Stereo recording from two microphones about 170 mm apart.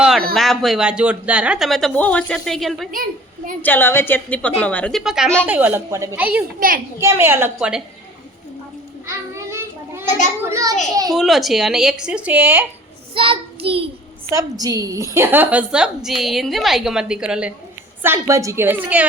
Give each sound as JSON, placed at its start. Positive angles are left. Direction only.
{"t": 0.3, "sound": "a woman's voice", "side_deg": 0}
{"t": 2.9, "sound": "a woman's voice", "side_deg": -55}
{"t": 3.6, "sound": "a woman's voice", "side_deg": 10}
{"t": 6.6, "sound": "a child's voice", "side_deg": -55}
{"t": 7.0, "sound": "a woman's voice", "side_deg": -15}
{"t": 9.0, "sound": "child singing", "side_deg": -15}
{"t": 10.4, "sound": "a child's voice", "side_deg": -20}
{"t": 11.1, "sound": "a woman's voice", "side_deg": 0}
{"t": 13.1, "sound": "a child's voice", "side_deg": -30}
{"t": 14.3, "sound": "a woman's voice", "side_deg": -20}
{"t": 18.0, "sound": "a woman's voice", "side_deg": -15}